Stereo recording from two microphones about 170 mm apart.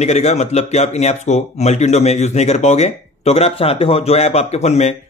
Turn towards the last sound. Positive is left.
turn(degrees=40)  # may be behind; listen again after turning